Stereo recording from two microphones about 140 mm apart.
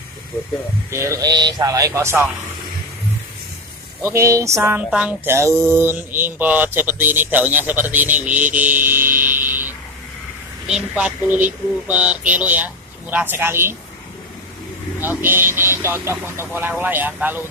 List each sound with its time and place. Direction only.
0.8 s speech: 20° right (ahead or behind)
4.0 s speech: 20° right (ahead or behind)
10.7 s speech: 10° right (ahead or behind)
15.0 s speech: 15° right (ahead or behind)